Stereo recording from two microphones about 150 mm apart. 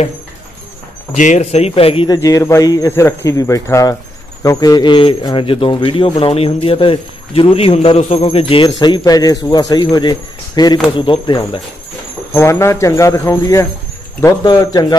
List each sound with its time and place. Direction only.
1.1 s speech: 50° left (ahead or behind)
2.0 s speech: 25° left (ahead or behind)
12.4 s speech: 20° left (ahead or behind)